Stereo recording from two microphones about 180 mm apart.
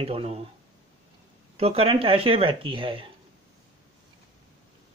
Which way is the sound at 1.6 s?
35° right (ahead or behind).